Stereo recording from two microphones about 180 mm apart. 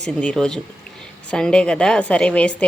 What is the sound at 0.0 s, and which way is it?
A woman's voice, 5° left (ahead or behind).